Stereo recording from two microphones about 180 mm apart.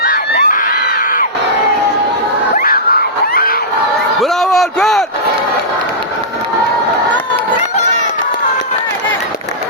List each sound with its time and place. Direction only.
0.0 s crowd: 55° left (ahead or behind)
2.6 s crowd: 55° left (ahead or behind)
4.2 s a sound: centre (ahead or behind)